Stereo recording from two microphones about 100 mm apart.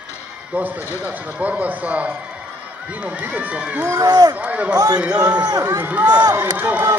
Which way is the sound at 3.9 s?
40° right (ahead or behind).